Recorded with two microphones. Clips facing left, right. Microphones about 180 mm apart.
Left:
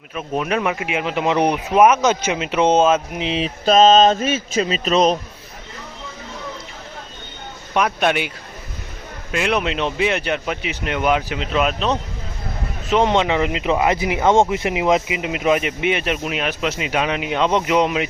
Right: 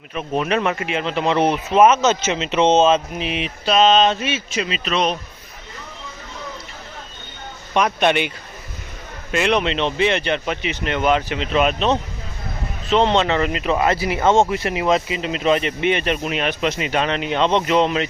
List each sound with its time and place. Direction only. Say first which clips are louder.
0.1 s speech: right 1 dB; 5° left (ahead or behind)
3.7 s speech: left 3 dB; 45° left (ahead or behind)
7.7 s speech: right 1 dB; 5° left (ahead or behind)
9.3 s speech: right 2 dB; 5° left (ahead or behind)
12.9 s speech: even; 10° left (ahead or behind)